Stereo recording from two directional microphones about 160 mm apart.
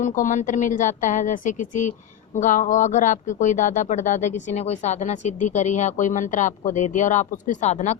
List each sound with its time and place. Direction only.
0.0 s speech: 55° left (ahead or behind)